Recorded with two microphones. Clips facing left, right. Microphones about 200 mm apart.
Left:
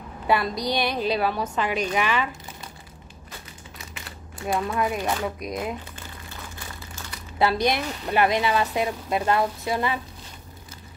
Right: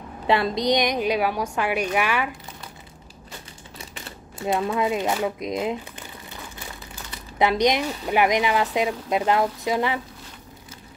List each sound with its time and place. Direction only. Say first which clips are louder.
0.3 s a woman's voice: right 3 dB; 25° right (ahead or behind)
3.7 s crumpling: right 4 dB; 25° right (ahead or behind)
5.2 s speech: right 4 dB; 20° right (ahead or behind)
7.3 s a woman's voice: right 2 dB; 20° right (ahead or behind)